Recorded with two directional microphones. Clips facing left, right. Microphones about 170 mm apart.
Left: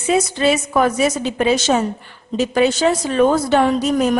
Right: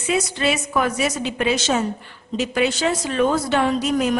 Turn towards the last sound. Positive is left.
turn(degrees=40)  # may be behind; listen again after turning